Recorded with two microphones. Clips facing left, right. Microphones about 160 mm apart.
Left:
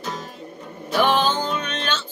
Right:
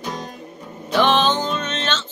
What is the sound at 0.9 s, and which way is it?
Music, 10° left (ahead or behind).